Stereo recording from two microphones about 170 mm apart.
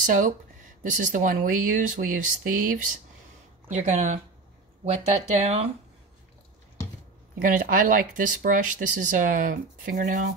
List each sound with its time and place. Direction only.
0.0 s speech: 50° right (ahead or behind)
3.6 s speech: 45° right (ahead or behind)
7.3 s speech: 55° right (ahead or behind)